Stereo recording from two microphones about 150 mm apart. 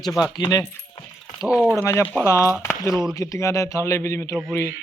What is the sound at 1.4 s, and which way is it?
Speech, 5° right (ahead or behind).